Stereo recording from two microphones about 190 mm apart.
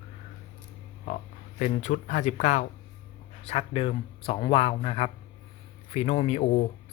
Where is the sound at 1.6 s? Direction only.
40° left (ahead or behind).